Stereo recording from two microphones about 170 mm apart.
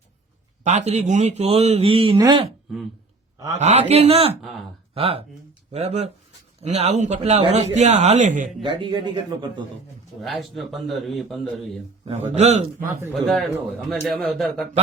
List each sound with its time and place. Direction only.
0.6 s a man's voice: 45° right (ahead or behind); by 2.5 s 25° right (ahead or behind)
3.6 s a man's voice: 40° right (ahead or behind)
8.6 s speech: 30° right (ahead or behind)
10.2 s a man's voice: centre (ahead or behind)
12.0 s a man's voice: 40° right (ahead or behind)
13.1 s a man's voice: centre (ahead or behind)